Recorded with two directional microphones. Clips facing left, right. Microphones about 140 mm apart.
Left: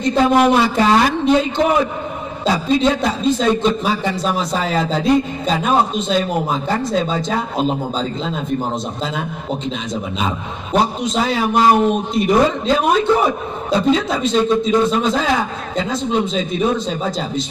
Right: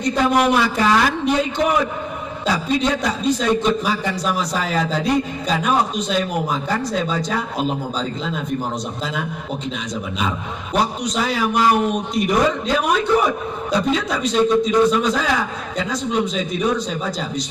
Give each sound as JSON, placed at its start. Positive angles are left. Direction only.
{"t": 0.0, "sound": "a man's voice", "side_deg": 25}
{"t": 10.2, "sound": "a man's voice", "side_deg": 25}